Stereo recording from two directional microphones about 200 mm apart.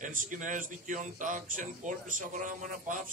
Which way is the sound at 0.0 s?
40° right (ahead or behind).